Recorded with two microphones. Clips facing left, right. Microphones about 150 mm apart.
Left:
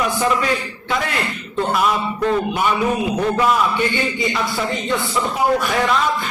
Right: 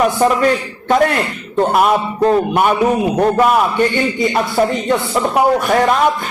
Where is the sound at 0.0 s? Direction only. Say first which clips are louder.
Right 6 dB; 50° right (ahead or behind).